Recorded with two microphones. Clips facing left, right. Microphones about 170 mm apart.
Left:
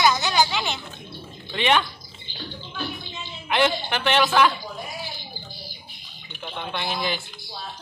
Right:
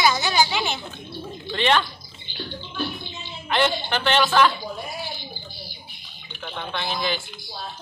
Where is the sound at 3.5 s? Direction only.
10° left (ahead or behind).